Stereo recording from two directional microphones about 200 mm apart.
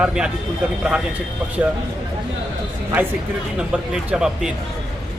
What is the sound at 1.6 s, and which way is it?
Speech, 10° right (ahead or behind).